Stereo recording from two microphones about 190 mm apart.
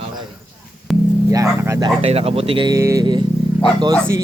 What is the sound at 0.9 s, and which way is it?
Music, centre (ahead or behind).